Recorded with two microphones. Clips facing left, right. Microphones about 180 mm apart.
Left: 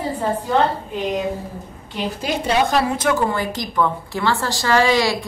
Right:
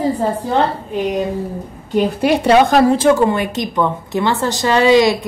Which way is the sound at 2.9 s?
25° right (ahead or behind).